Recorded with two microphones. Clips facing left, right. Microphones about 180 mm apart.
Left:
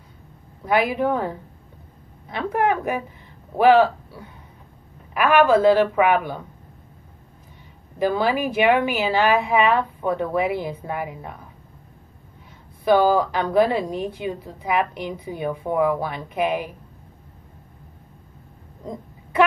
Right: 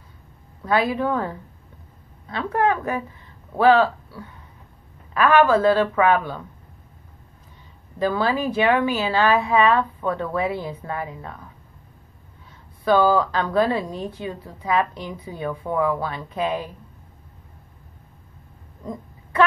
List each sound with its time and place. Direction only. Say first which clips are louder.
0.7 s a woman's voice: left 1 dB; 15° left (ahead or behind)
8.0 s a woman's voice: left 1 dB; 15° left (ahead or behind)
12.8 s a woman's voice: left 1 dB; 15° left (ahead or behind)